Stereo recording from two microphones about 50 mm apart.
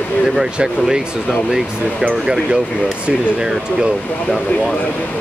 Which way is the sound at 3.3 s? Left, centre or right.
Centre.